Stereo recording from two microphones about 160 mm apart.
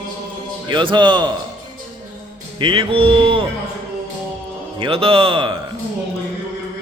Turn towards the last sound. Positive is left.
turn(degrees=-30)  # may be behind; listen again after turning